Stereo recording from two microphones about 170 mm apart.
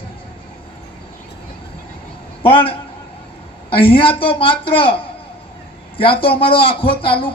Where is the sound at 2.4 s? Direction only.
30° left (ahead or behind).